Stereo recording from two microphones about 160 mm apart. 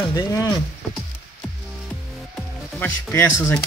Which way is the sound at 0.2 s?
25° left (ahead or behind).